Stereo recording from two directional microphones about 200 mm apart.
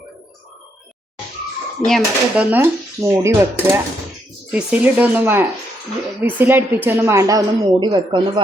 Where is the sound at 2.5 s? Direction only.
10° right (ahead or behind).